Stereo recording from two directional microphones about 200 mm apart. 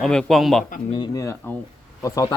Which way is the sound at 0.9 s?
20° left (ahead or behind).